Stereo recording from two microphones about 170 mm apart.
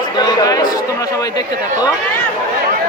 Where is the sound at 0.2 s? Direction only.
25° left (ahead or behind).